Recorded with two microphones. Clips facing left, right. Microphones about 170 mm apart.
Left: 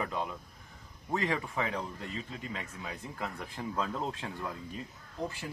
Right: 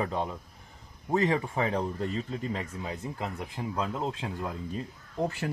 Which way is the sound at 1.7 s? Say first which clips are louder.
Right 8 dB; 40° right (ahead or behind).